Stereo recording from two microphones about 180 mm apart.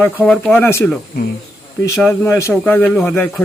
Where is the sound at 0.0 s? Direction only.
10° left (ahead or behind).